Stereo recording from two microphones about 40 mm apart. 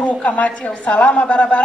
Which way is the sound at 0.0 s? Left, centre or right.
Left.